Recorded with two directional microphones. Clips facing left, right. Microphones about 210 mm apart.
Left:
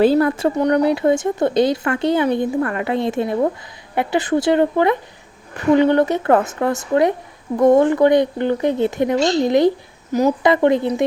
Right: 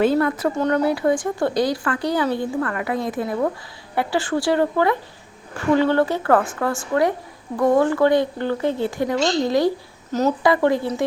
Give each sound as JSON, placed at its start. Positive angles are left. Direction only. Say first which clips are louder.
{"t": 0.0, "sound": "speech", "louder": "left 4 dB", "side_deg": 30}
{"t": 0.6, "sound": "speech", "louder": "left 3 dB", "side_deg": 15}